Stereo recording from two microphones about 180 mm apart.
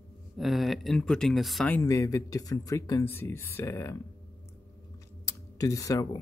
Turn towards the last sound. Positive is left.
turn(degrees=20)  # may be behind; listen again after turning